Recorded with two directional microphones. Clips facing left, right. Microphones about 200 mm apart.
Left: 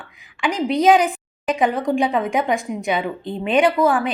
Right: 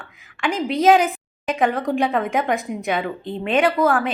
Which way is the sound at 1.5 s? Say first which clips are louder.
Left 1 dB; 15° left (ahead or behind).